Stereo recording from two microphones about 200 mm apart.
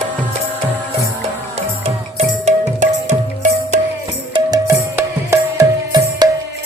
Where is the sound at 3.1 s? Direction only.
40° right (ahead or behind).